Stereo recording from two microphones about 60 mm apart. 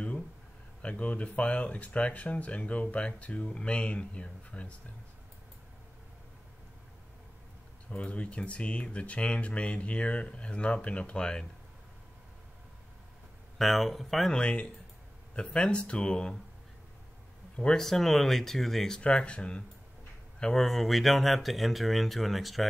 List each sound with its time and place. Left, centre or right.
0.8 s speech: left
7.9 s speech: left
13.6 s speech: centre
14.3 s speech: centre
17.6 s speech: centre
18.9 s speech: centre
20.6 s speech: centre